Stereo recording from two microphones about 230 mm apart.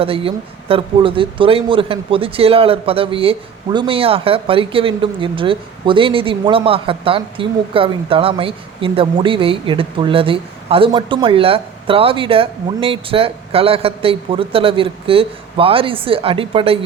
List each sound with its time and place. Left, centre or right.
0.0 s speech: right